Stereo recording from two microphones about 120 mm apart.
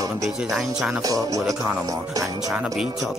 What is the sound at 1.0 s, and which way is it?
Music, 30° right (ahead or behind).